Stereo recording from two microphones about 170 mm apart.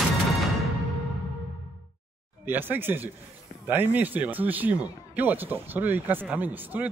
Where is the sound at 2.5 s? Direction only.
10° right (ahead or behind).